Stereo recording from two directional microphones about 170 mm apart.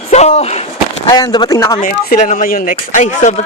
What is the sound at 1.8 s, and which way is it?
Speech, 50° left (ahead or behind).